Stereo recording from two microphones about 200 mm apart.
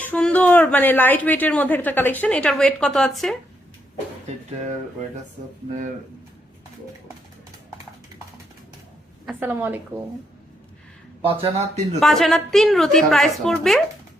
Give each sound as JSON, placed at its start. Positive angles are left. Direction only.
{"t": 0.0, "sound": "a woman's voice", "side_deg": 5}
{"t": 5.4, "sound": "speech", "side_deg": -45}
{"t": 9.2, "sound": "a woman's voice", "side_deg": -10}
{"t": 11.3, "sound": "speech", "side_deg": -30}
{"t": 11.9, "sound": "a woman's voice", "side_deg": 0}